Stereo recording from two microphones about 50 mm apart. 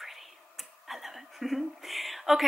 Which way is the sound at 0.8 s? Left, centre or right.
Centre.